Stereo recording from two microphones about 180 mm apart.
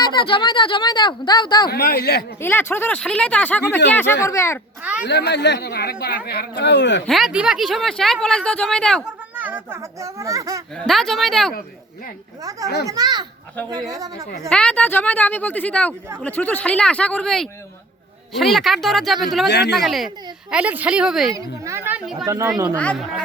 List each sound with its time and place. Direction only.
0.0 s speech: 25° left (ahead or behind)
1.7 s speech: 60° left (ahead or behind)
2.4 s speech: 10° left (ahead or behind)
4.8 s a sound: 5° right (ahead or behind)
5.0 s speech: 70° left (ahead or behind)
7.0 s speech: centre (ahead or behind)
9.3 s a child's voice: 10° right (ahead or behind)
10.8 s speech: centre (ahead or behind)
12.8 s a woman's voice: 20° right (ahead or behind)
14.5 s speech: 5° left (ahead or behind)
19.5 s speech: 65° left (ahead or behind)
19.7 s speech: centre (ahead or behind)
21.3 s speech: 15° right (ahead or behind)
22.7 s speech: 5° left (ahead or behind)